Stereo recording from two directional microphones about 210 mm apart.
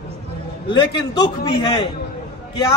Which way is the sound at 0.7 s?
25° left (ahead or behind).